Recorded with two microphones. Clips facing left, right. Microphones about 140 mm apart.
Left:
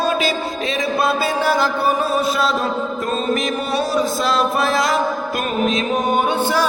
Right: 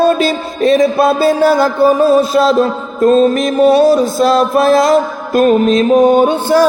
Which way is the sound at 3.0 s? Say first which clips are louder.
Right 14 dB; 40° right (ahead or behind).